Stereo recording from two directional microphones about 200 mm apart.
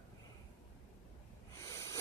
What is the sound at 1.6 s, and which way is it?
Snort, 15° left (ahead or behind).